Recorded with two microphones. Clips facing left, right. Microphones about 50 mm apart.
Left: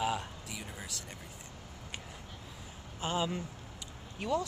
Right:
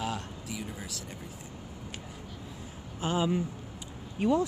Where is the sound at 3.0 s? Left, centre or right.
Centre.